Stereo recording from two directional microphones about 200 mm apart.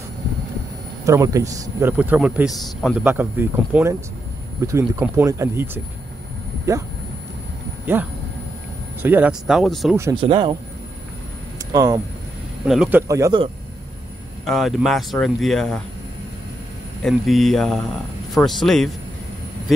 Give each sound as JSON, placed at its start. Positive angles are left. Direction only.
{"t": 1.0, "sound": "a man's voice", "side_deg": -15}
{"t": 7.8, "sound": "speech", "side_deg": -10}
{"t": 10.1, "sound": "speech", "side_deg": -25}
{"t": 11.7, "sound": "a man's voice", "side_deg": -15}
{"t": 12.6, "sound": "speech", "side_deg": -5}
{"t": 13.1, "sound": "speech", "side_deg": -20}
{"t": 14.4, "sound": "speech", "side_deg": 0}
{"t": 17.0, "sound": "speech", "side_deg": 0}